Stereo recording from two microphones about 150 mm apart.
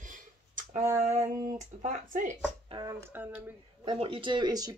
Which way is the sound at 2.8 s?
15° right (ahead or behind).